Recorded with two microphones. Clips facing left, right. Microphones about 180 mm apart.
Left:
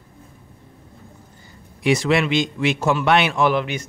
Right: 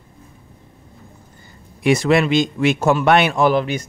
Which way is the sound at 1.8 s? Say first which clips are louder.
Right 3 dB; 50° right (ahead or behind).